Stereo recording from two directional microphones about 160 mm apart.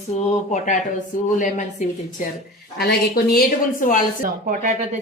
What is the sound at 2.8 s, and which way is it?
Speech, 80° left.